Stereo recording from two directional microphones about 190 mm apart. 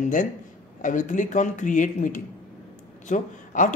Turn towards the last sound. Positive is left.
turn(degrees=40)  # may be behind; listen again after turning